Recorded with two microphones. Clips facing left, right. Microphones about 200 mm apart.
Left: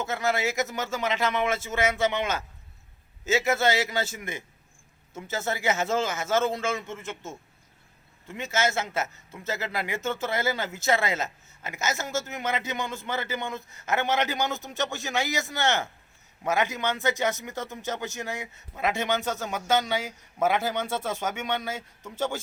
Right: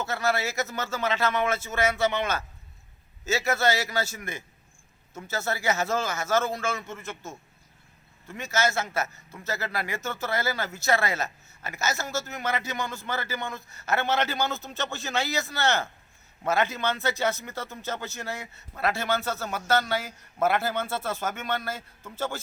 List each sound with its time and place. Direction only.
0.0 s a man's voice: 20° left (ahead or behind)
8.3 s a man's voice: 20° left (ahead or behind)
21.2 s speech: 5° right (ahead or behind)